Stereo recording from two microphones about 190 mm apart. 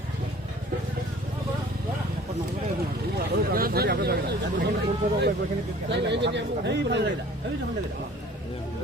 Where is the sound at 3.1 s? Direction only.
50° right (ahead or behind).